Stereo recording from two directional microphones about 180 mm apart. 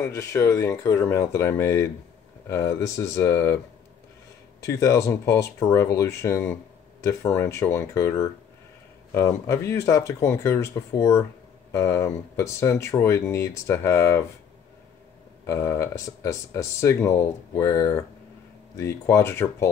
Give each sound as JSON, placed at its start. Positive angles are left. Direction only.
{"t": 0.0, "sound": "speech", "side_deg": 15}
{"t": 4.7, "sound": "speech", "side_deg": 15}
{"t": 15.4, "sound": "speech", "side_deg": 15}